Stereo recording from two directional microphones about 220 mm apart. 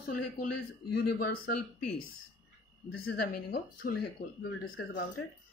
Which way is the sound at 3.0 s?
40° left (ahead or behind).